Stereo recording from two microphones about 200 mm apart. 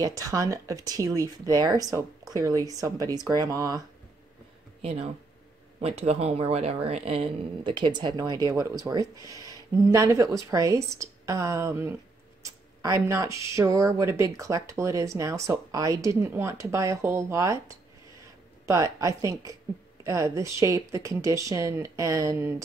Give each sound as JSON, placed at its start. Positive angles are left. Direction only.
{"t": 0.0, "sound": "speech", "side_deg": -15}
{"t": 4.8, "sound": "speech", "side_deg": -30}